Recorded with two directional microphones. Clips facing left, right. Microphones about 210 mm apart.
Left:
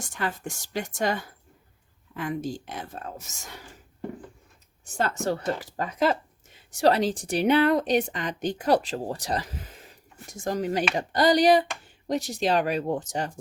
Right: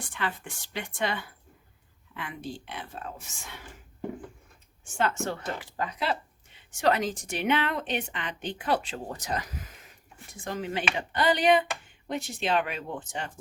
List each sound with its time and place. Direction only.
0.0 s speech: 40° left (ahead or behind)
4.9 s speech: 35° left (ahead or behind)
10.2 s speech: 40° left (ahead or behind)